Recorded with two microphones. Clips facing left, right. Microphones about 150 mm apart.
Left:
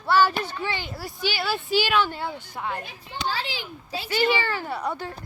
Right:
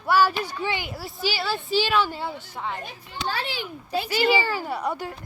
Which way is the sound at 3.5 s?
50° right (ahead or behind).